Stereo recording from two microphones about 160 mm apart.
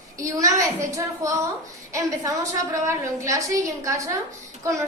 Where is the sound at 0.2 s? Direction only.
20° right (ahead or behind).